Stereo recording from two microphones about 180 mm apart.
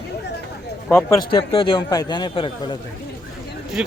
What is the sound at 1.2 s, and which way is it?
A man's voice, 25° left (ahead or behind).